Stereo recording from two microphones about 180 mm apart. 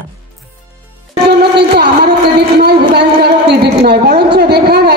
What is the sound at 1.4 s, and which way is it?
Music, 65° right (ahead or behind).